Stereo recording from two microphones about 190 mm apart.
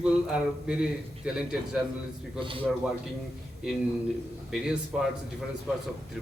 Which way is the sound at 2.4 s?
25° right (ahead or behind).